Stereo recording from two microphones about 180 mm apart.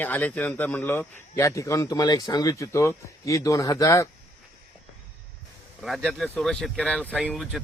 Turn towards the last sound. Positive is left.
turn(degrees=0)  # may be behind; listen again after turning